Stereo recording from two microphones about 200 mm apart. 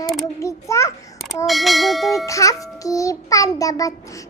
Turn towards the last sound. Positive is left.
turn(degrees=15)  # may be behind; listen again after turning